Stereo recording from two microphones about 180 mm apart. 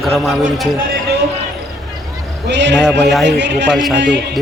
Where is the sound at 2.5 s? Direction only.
75° right (ahead or behind).